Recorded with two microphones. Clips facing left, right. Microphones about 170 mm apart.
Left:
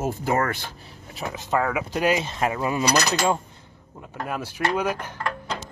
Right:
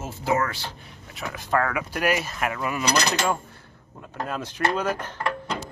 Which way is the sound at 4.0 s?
10° left (ahead or behind).